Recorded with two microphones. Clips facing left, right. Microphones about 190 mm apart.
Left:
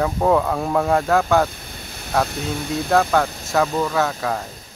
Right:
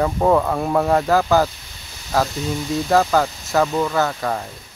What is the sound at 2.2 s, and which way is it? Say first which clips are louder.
Speech: right 2 dB; 60° left (ahead or behind).